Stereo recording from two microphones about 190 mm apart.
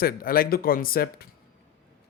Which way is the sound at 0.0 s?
50° left (ahead or behind).